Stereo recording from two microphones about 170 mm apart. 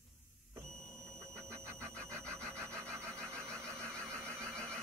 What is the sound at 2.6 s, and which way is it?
Sawing, 15° right (ahead or behind).